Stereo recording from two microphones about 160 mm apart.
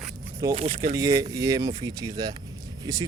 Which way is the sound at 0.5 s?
40° right (ahead or behind).